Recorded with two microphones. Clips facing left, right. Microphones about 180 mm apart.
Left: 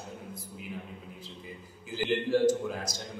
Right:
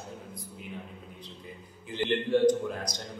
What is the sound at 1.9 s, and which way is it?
A man's voice, 5° left (ahead or behind).